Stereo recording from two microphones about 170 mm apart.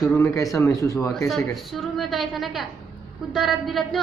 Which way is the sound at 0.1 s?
10° left (ahead or behind).